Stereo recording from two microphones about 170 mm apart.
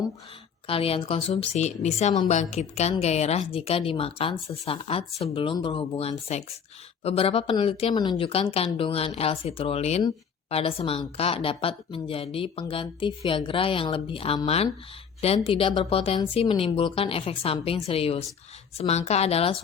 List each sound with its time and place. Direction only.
0.7 s a woman's voice: 35° left (ahead or behind)